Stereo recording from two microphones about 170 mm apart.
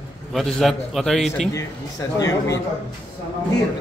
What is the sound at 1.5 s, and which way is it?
A man's voice, 20° left (ahead or behind).